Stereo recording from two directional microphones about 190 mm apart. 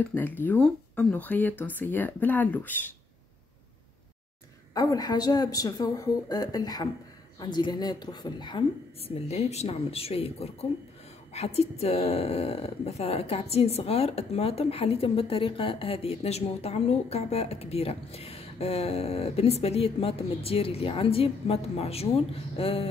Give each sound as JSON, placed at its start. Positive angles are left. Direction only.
{"t": 0.1, "sound": "speech", "side_deg": 10}
{"t": 4.7, "sound": "a woman's voice", "side_deg": 20}